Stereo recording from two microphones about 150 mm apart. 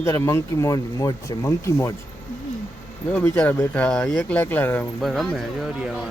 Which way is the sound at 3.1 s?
10° left (ahead or behind).